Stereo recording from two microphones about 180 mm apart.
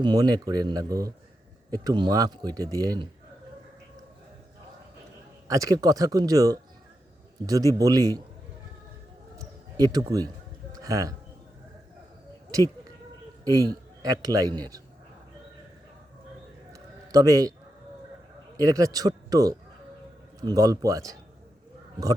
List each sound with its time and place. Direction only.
0.0 s speech: 25° right (ahead or behind)
5.5 s speech: 20° right (ahead or behind)
9.7 s speech: 20° right (ahead or behind)
10.7 s music: 20° right (ahead or behind)
13.4 s a man's voice: 20° right (ahead or behind)
16.7 s a sound: 20° right (ahead or behind)
18.5 s a man's voice: 20° right (ahead or behind)